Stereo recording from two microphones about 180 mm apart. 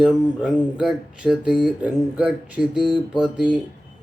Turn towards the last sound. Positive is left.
turn(degrees=-5)  # may be behind; listen again after turning